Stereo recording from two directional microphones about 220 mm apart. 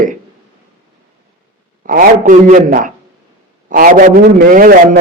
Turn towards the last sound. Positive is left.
turn(degrees=-40)  # may be behind; listen again after turning